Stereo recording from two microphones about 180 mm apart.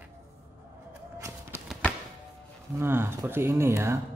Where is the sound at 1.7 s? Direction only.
5° left (ahead or behind).